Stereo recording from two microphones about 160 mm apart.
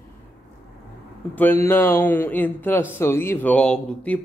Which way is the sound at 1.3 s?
10° left (ahead or behind).